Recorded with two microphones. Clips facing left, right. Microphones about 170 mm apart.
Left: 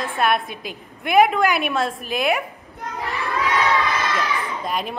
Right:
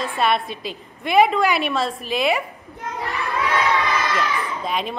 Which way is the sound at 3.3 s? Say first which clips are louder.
Even; centre (ahead or behind).